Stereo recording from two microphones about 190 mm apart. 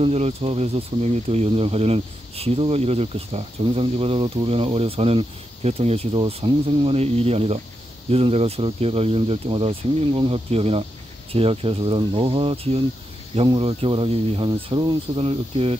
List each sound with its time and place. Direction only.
0.0 s speech: 30° right (ahead or behind)